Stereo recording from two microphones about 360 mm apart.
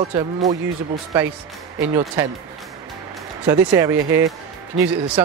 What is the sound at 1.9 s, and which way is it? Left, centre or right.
Speech, centre.